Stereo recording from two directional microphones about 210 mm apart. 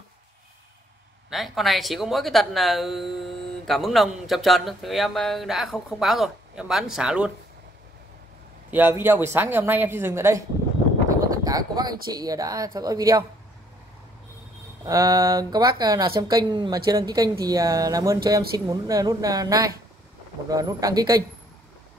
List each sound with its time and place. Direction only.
1.3 s speech: centre (ahead or behind)
8.6 s speech: 10° right (ahead or behind)
14.9 s speech: 15° right (ahead or behind)